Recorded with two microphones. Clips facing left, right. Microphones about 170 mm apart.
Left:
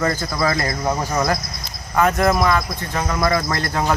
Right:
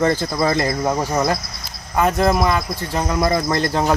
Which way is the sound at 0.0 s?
25° right (ahead or behind).